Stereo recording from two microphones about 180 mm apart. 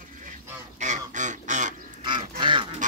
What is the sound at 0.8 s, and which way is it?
Duck, 40° right (ahead or behind).